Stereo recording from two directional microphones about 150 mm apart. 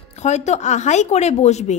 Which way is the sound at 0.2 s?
50° left (ahead or behind).